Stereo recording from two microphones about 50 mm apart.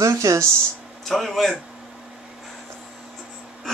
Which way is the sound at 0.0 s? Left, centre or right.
Right.